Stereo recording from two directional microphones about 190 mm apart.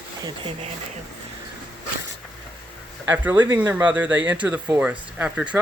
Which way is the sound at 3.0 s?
10° right (ahead or behind).